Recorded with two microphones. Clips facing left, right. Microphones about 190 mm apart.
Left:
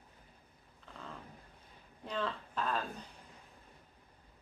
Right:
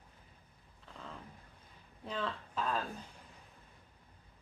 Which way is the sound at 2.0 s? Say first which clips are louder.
Left 1 dB; centre (ahead or behind).